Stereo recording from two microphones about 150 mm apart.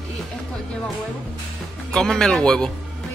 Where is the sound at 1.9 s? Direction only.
5° left (ahead or behind).